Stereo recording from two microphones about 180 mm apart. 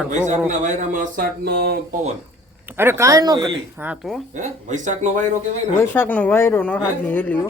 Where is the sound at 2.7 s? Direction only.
15° right (ahead or behind).